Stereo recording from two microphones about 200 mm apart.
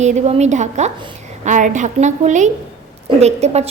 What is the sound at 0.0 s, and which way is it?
A woman's voice, 35° right (ahead or behind).